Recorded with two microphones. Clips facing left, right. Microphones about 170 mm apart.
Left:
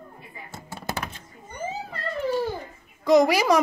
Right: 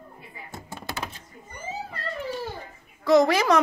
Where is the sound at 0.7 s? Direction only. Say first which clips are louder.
Left 5 dB; 45° left (ahead or behind).